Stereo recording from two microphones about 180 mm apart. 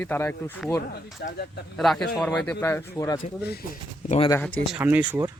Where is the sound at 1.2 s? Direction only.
60° left (ahead or behind).